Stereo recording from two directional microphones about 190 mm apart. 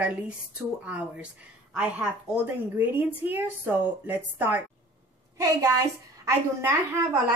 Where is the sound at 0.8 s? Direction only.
5° right (ahead or behind).